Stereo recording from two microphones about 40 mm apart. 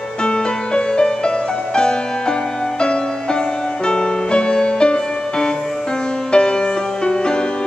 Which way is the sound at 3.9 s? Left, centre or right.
Left.